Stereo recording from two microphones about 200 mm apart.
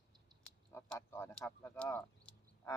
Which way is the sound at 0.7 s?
10° left (ahead or behind).